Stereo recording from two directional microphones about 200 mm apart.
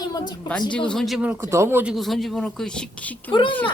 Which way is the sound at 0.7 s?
5° left (ahead or behind).